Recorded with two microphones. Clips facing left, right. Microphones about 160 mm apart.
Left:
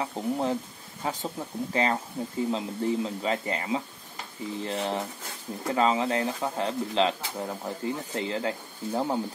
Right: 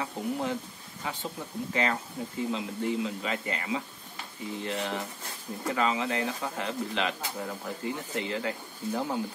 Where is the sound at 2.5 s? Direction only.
35° left (ahead or behind).